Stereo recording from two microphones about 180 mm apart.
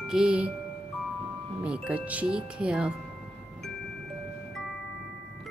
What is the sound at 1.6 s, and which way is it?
Speech, 5° right (ahead or behind).